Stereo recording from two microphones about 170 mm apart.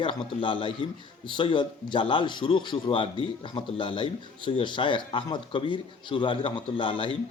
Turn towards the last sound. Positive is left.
turn(degrees=30)  # may be behind; listen again after turning